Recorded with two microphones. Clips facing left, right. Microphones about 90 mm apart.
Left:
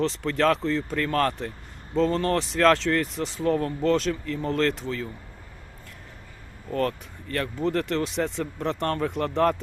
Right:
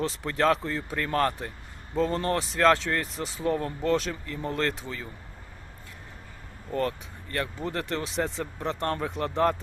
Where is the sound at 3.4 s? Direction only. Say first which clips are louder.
Left 3 dB; 15° right (ahead or behind).